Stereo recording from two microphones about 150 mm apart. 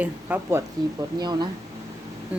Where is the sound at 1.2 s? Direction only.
30° right (ahead or behind).